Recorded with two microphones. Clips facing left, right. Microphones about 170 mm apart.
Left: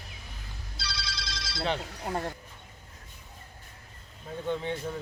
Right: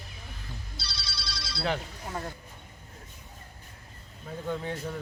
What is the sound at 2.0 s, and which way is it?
Speech, 45° left (ahead or behind).